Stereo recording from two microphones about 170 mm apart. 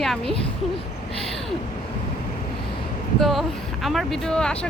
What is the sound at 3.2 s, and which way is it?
A woman's voice, centre (ahead or behind).